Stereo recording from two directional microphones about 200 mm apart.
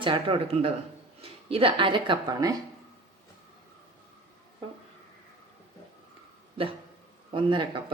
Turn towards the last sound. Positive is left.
turn(degrees=-25)  # may be behind; listen again after turning